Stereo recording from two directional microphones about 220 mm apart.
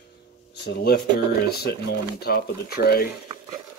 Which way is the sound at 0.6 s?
45° left (ahead or behind).